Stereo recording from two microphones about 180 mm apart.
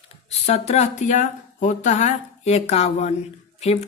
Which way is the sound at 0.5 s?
35° left (ahead or behind).